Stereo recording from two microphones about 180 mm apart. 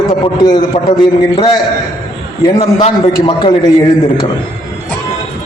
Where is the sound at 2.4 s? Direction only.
35° left (ahead or behind).